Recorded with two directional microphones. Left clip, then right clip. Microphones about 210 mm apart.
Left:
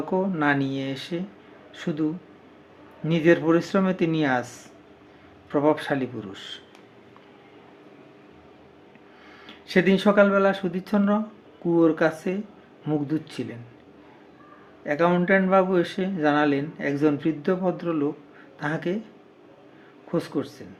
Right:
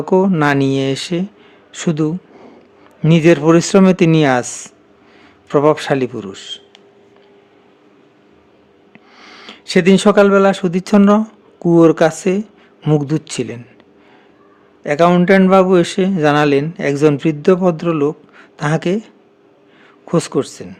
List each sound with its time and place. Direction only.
0.0 s speech: 55° right (ahead or behind)
9.1 s speech: 50° right (ahead or behind)
14.8 s speech: 55° right (ahead or behind)